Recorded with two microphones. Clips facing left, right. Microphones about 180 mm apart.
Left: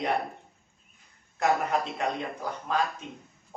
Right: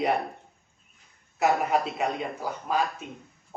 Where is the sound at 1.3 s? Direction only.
5° right (ahead or behind).